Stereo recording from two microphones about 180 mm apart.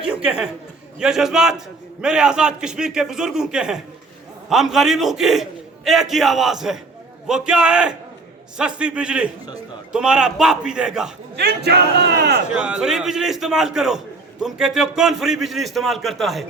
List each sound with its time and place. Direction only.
0.1 s a man's voice: 5° right (ahead or behind)
11.3 s a sound: 65° right (ahead or behind)
12.5 s a man's voice: 5° right (ahead or behind)